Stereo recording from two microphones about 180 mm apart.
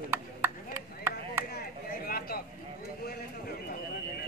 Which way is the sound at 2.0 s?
55° left (ahead or behind).